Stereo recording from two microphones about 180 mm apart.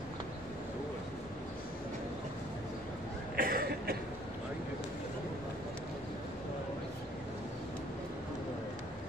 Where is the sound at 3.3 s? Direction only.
55° right (ahead or behind).